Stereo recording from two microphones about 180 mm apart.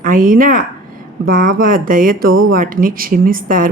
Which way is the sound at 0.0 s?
50° right (ahead or behind).